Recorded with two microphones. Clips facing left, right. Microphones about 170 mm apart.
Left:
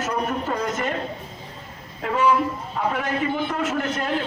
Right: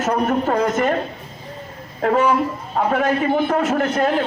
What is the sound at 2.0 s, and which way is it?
A man's voice, 50° right (ahead or behind).